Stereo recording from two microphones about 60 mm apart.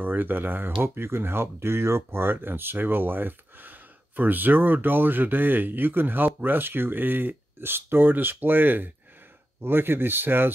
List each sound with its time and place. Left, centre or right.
0.0 s speech: right